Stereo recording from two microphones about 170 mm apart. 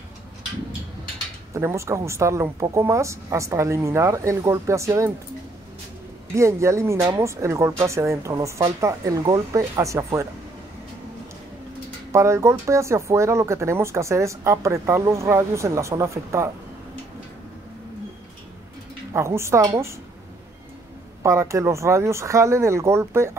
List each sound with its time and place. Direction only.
1.5 s speech: 15° right (ahead or behind)
6.3 s speech: 15° right (ahead or behind)
12.1 s speech: 15° right (ahead or behind)
19.1 s speech: 15° right (ahead or behind)
21.2 s speech: 15° right (ahead or behind)